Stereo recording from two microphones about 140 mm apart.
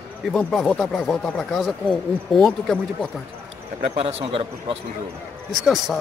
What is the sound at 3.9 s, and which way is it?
Speech, 40° right (ahead or behind).